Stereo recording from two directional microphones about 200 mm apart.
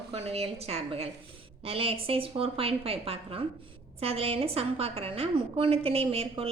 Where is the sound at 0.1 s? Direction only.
30° right (ahead or behind).